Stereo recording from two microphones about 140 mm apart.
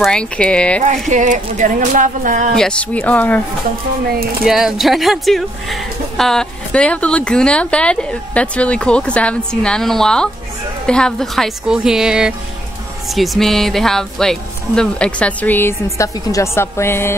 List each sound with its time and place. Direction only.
0.0 s speech: 5° left (ahead or behind)
0.8 s speech: 60° right (ahead or behind)
2.5 s speech: 5° left (ahead or behind)
4.5 s a woman's voice: centre (ahead or behind); by 17.1 s 20° left (ahead or behind)